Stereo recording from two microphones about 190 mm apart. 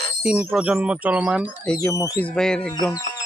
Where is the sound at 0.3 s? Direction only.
5° right (ahead or behind).